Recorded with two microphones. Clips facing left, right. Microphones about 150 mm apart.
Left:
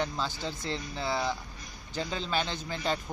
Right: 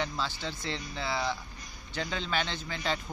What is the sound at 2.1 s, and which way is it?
Speech, 10° left (ahead or behind).